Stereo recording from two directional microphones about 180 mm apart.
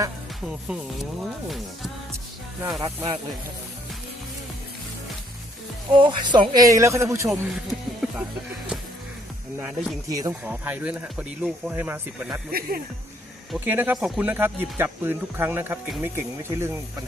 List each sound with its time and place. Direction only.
0.4 s music: 5° right (ahead or behind)
2.8 s speech: 20° right (ahead or behind)
6.0 s speech: 25° right (ahead or behind)
7.3 s music: centre (ahead or behind)
9.6 s music: 5° right (ahead or behind)
10.1 s speech: 20° right (ahead or behind)
12.5 s speech: 55° right (ahead or behind)
13.5 s speech: 10° right (ahead or behind)